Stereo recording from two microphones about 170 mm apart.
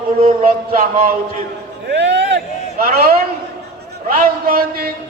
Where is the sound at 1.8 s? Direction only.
90° right.